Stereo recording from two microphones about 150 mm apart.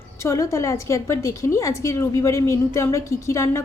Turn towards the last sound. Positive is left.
turn(degrees=20)  # may be behind; listen again after turning